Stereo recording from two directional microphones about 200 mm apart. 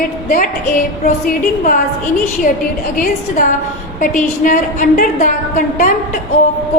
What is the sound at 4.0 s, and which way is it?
A woman's voice, 40° left (ahead or behind).